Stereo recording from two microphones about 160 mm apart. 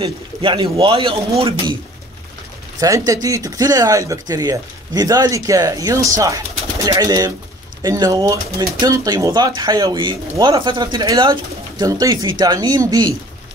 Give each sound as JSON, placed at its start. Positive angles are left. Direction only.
{"t": 0.0, "sound": "speech", "side_deg": -35}
{"t": 3.1, "sound": "speech", "side_deg": -20}